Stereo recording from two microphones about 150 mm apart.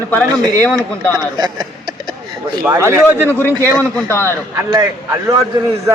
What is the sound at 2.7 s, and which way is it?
Speech, 20° right (ahead or behind).